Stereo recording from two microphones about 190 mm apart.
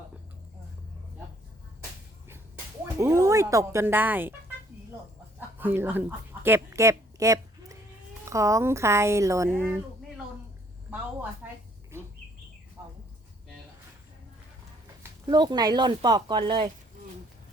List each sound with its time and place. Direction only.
3.0 s speech: 15° right (ahead or behind)
5.5 s speech: 10° right (ahead or behind)
10.9 s a sound: 5° right (ahead or behind)
12.8 s bird: 15° right (ahead or behind)
15.3 s speech: 20° right (ahead or behind)